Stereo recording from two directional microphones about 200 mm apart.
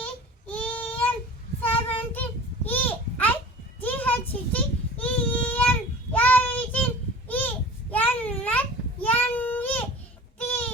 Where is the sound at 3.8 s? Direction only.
10° left (ahead or behind).